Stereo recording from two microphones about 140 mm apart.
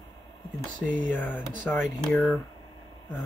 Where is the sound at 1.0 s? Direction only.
10° left (ahead or behind).